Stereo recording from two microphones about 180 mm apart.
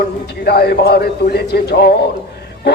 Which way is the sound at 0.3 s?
60° left (ahead or behind).